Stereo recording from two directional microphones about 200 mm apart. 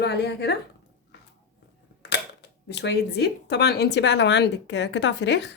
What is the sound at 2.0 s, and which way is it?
Speech, 60° left (ahead or behind).